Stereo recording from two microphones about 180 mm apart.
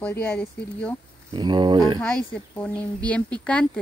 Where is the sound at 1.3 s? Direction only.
25° right (ahead or behind).